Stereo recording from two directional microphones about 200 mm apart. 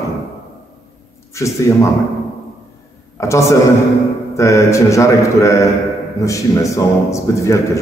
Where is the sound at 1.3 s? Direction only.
15° left (ahead or behind).